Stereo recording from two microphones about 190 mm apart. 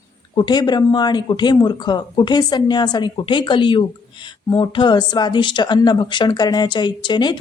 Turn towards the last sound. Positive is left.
turn(degrees=25)  # may be behind; listen again after turning